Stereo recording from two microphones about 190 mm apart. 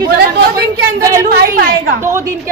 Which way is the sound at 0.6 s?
55° right (ahead or behind).